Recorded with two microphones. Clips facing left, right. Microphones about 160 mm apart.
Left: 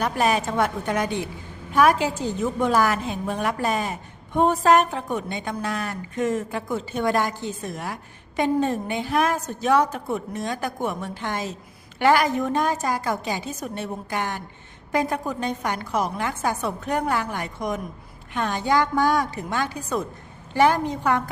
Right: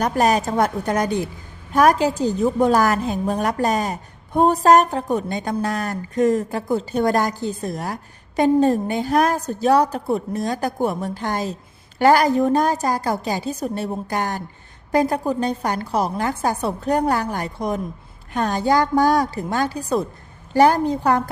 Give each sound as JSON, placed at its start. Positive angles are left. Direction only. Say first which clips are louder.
{"t": 0.0, "sound": "a woman's voice", "louder": "right 4 dB", "side_deg": -40}